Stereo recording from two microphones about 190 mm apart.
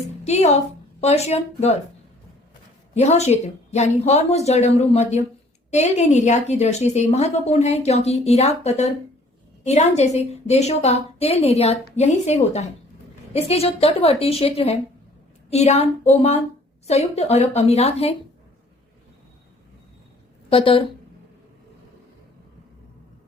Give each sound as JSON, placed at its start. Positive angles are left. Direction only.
{"t": 0.3, "sound": "a woman's voice", "side_deg": 35}
{"t": 2.9, "sound": "a woman's voice", "side_deg": 35}
{"t": 20.5, "sound": "a woman's voice", "side_deg": 30}